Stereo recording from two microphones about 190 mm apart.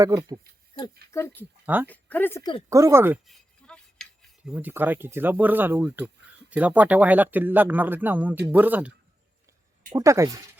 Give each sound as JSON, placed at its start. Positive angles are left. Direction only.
{"t": 0.0, "sound": "speech", "side_deg": -20}
{"t": 1.6, "sound": "speech", "side_deg": -10}
{"t": 1.9, "sound": "speech", "side_deg": 10}
{"t": 2.4, "sound": "speech", "side_deg": 25}
{"t": 2.6, "sound": "speech", "side_deg": -15}
{"t": 3.2, "sound": "cutlery", "side_deg": 5}
{"t": 4.4, "sound": "speech", "side_deg": -5}
{"t": 9.9, "sound": "speech", "side_deg": -15}